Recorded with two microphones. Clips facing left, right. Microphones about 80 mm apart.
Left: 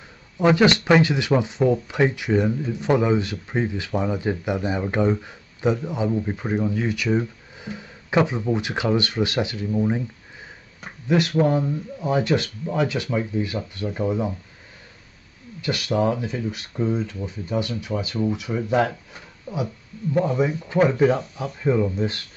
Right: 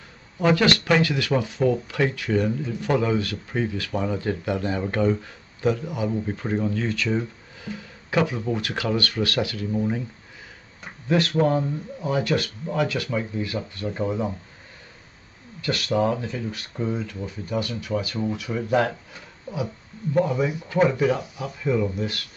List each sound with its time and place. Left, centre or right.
0.4 s speech: centre
15.6 s speech: centre
20.2 s speech: left